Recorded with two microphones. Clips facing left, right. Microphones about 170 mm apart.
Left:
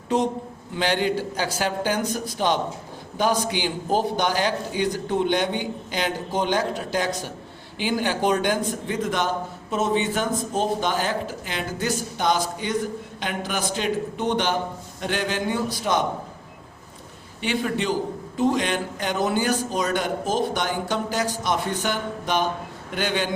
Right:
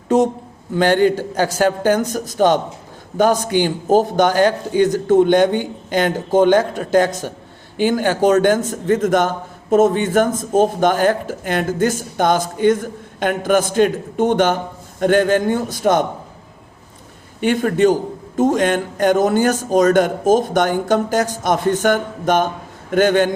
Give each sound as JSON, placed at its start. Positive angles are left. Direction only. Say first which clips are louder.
{"t": 0.8, "sound": "a man's voice", "louder": "right 9 dB", "side_deg": -45}
{"t": 17.4, "sound": "a man's voice", "louder": "right 10 dB", "side_deg": -50}